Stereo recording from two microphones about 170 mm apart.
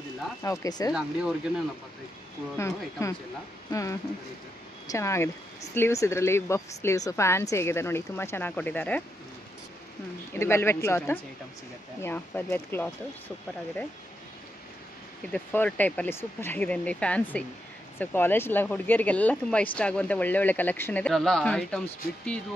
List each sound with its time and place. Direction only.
0.4 s speech: 20° left (ahead or behind)
2.5 s speech: 15° left (ahead or behind)
10.3 s speech: 15° left (ahead or behind)
15.3 s speech: 10° left (ahead or behind)